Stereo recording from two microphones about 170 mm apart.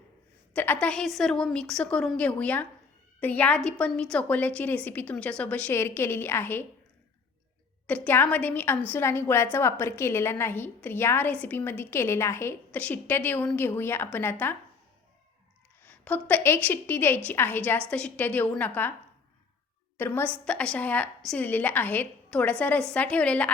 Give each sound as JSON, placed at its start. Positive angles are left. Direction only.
{"t": 0.5, "sound": "a woman's voice", "side_deg": 10}
{"t": 7.9, "sound": "a woman's voice", "side_deg": 10}
{"t": 15.8, "sound": "a woman's voice", "side_deg": 10}
{"t": 20.0, "sound": "a woman's voice", "side_deg": 10}